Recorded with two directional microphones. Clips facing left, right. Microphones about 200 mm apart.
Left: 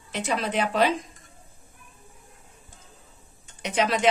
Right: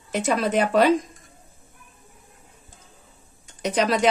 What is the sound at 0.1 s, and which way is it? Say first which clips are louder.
Speech: right 5 dB; 45° right (ahead or behind).